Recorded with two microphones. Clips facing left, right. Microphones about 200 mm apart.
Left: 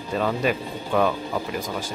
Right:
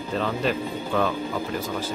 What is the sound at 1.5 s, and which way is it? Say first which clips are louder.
Speech: right 1 dB; 15° left (ahead or behind).